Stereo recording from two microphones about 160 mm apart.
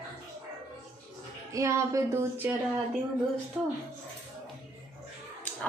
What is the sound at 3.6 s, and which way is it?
Speech, 5° right (ahead or behind).